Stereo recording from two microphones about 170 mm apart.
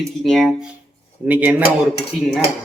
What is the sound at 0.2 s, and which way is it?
Speech, centre (ahead or behind).